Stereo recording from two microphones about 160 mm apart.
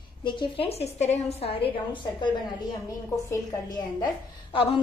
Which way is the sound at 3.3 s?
25° left (ahead or behind).